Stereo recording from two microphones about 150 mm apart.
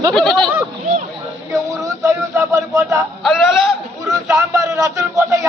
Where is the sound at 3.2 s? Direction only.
Centre (ahead or behind).